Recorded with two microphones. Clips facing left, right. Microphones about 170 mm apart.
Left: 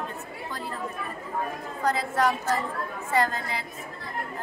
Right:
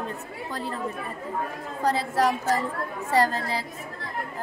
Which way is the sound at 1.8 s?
30° right (ahead or behind).